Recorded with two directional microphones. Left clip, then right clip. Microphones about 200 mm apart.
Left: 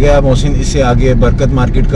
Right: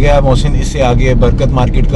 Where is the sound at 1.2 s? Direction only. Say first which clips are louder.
Even; 5° left (ahead or behind).